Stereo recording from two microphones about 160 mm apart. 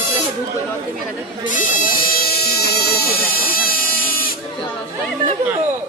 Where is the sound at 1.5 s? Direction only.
60° left (ahead or behind).